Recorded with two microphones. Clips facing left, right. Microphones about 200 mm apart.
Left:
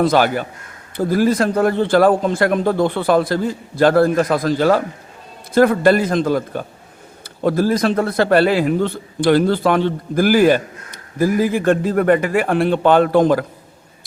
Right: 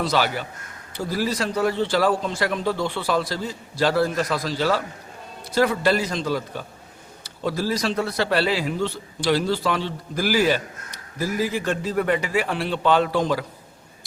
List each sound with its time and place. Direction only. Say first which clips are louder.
0.0 s a man's voice: left 8 dB; 50° left (ahead or behind)